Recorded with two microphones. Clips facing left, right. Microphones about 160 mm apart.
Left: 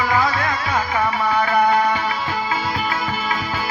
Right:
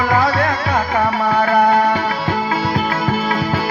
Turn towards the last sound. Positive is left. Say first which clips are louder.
# right 5 dB
turn(degrees=-55)  # may be behind; listen again after turning